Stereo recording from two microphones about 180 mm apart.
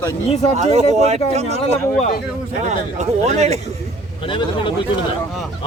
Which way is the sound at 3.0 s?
40° right (ahead or behind).